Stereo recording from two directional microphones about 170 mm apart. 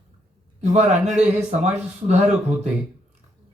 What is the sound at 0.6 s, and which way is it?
A man's voice, 45° right (ahead or behind).